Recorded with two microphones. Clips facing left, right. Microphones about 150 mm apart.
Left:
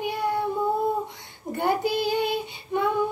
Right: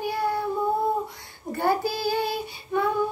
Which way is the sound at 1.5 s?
20° left (ahead or behind).